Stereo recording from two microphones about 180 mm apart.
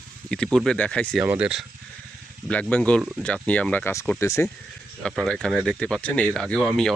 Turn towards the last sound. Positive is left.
turn(degrees=5)  # may be behind; listen again after turning